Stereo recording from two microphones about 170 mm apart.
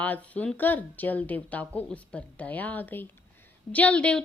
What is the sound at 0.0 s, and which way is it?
A woman's voice, 10° left (ahead or behind).